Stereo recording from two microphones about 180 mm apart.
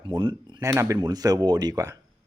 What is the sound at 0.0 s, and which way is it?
Speech, 25° right (ahead or behind).